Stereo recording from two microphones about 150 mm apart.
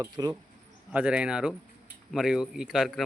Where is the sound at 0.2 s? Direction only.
25° right (ahead or behind).